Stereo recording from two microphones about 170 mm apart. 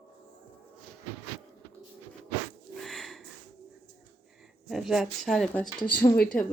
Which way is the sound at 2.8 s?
Centre (ahead or behind).